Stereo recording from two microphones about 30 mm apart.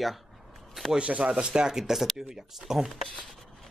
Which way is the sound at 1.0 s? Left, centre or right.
Right.